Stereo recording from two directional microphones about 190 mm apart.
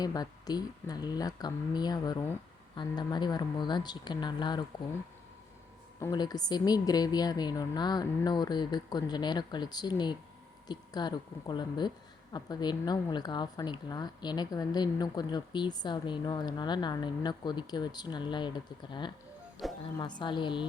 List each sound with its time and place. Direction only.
0.0 s speech: 20° left (ahead or behind)
6.0 s speech: 20° left (ahead or behind)
19.6 s speech: centre (ahead or behind)
20.0 s speech: 25° left (ahead or behind)